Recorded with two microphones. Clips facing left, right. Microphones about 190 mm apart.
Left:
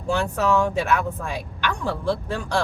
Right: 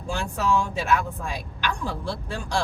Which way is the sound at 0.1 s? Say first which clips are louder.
Left 4 dB; 60° left (ahead or behind).